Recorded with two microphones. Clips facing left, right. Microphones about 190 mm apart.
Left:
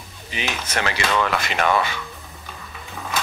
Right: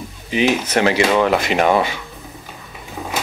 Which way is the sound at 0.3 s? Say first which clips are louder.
Right 11 dB; 15° right (ahead or behind).